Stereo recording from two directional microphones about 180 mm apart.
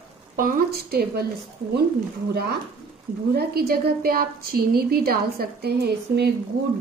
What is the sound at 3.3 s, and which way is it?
A woman's voice, 60° right (ahead or behind).